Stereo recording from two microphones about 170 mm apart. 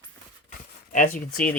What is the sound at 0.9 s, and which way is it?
Speech, 55° left (ahead or behind).